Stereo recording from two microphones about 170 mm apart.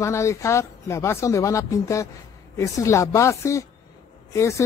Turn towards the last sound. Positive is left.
turn(degrees=15)  # may be behind; listen again after turning